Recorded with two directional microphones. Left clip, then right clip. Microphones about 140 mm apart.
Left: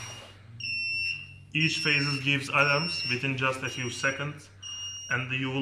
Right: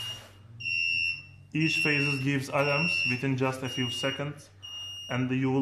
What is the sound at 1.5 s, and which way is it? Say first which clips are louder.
Speech: left 1 dB; 40° right (ahead or behind).